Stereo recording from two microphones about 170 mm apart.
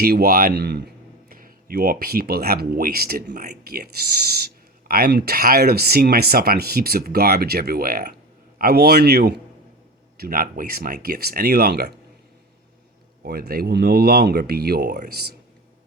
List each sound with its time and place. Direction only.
0.0 s speech: 65° right (ahead or behind)
1.3 s speech: 55° right (ahead or behind)
13.2 s speech: 65° right (ahead or behind)